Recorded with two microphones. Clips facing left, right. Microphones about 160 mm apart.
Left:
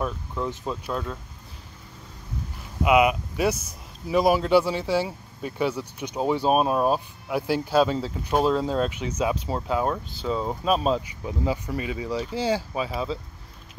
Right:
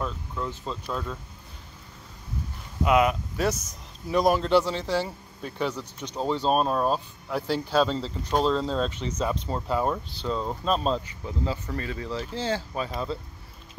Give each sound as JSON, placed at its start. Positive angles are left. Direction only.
{"t": 0.0, "sound": "speech", "side_deg": 15}
{"t": 2.8, "sound": "speech", "side_deg": 10}